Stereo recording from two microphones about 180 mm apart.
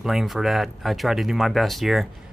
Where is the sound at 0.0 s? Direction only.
Centre (ahead or behind).